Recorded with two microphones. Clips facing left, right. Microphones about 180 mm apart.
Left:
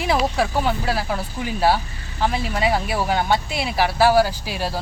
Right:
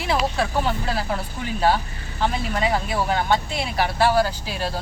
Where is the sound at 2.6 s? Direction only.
10° left (ahead or behind).